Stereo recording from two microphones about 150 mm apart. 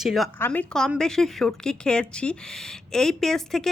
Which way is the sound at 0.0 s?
Centre (ahead or behind).